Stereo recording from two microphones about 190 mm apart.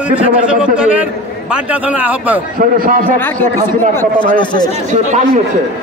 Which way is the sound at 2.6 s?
45° right (ahead or behind).